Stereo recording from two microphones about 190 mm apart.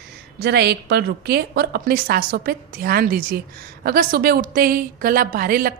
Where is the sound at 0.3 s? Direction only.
60° right (ahead or behind).